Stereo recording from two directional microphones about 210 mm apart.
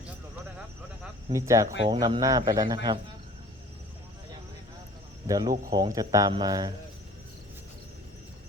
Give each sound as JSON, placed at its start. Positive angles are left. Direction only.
{"t": 1.3, "sound": "a man's voice", "side_deg": -15}
{"t": 5.2, "sound": "speech", "side_deg": -15}